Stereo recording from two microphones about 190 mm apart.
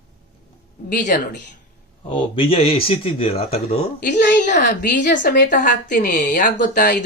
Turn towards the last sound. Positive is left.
turn(degrees=45)  # may be behind; listen again after turning